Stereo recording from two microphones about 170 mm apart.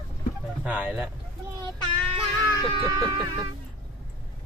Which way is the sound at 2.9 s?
20° right (ahead or behind).